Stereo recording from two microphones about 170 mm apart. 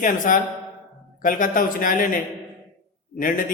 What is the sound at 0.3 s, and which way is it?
A man's voice, 50° left (ahead or behind).